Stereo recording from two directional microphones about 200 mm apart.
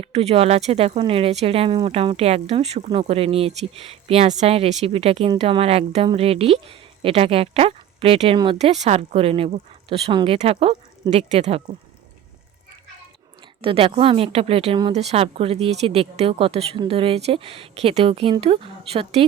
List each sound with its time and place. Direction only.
0.0 s speech: 30° right (ahead or behind)
13.6 s speech: 25° right (ahead or behind)